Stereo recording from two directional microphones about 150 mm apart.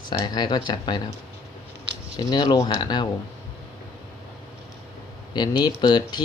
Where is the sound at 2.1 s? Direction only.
30° left (ahead or behind).